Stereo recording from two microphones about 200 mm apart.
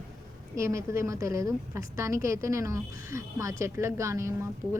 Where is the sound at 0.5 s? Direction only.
15° right (ahead or behind).